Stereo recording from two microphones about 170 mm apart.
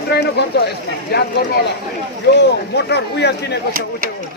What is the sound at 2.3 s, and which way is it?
Speech, 85° left.